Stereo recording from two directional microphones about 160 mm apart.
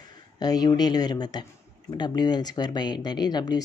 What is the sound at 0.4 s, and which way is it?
Speech, 25° left (ahead or behind).